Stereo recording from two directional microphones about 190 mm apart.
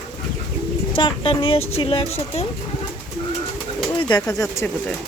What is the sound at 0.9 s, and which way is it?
A woman's voice, 25° left (ahead or behind).